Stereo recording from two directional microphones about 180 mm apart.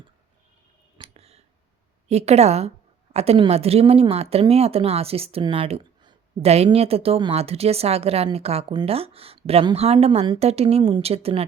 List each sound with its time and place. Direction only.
0.9 s clicking: 35° right (ahead or behind)
2.0 s a woman's voice: 35° right (ahead or behind)